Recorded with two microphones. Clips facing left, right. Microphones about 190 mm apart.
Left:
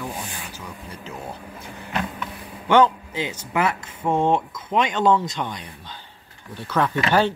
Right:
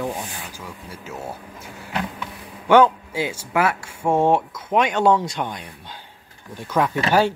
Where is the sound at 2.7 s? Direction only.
10° right (ahead or behind).